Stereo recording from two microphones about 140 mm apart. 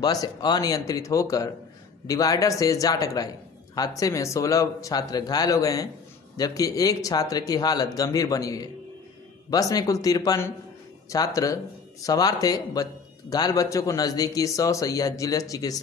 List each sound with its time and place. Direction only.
0.0 s a man's voice: 30° left (ahead or behind)